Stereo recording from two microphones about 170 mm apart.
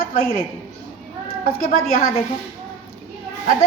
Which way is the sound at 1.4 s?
60° left (ahead or behind).